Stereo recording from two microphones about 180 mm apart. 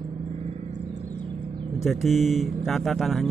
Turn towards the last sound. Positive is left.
turn(degrees=0)  # may be behind; listen again after turning